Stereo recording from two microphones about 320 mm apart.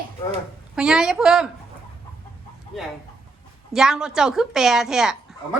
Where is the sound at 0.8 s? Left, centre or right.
Centre.